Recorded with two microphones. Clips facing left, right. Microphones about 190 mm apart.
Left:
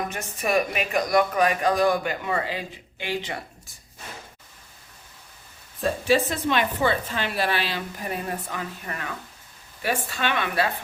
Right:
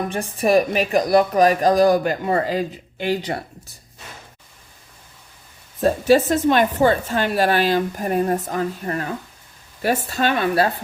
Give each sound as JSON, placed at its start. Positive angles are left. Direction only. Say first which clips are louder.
{"t": 0.1, "sound": "a woman's voice", "louder": "right 7 dB", "side_deg": -35}
{"t": 5.8, "sound": "a woman's voice", "louder": "right 6 dB", "side_deg": -45}